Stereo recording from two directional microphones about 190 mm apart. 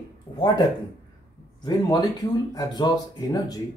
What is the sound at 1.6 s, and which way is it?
Speech, 20° left (ahead or behind).